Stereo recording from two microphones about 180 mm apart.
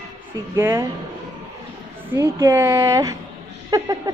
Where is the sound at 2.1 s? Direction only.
15° right (ahead or behind).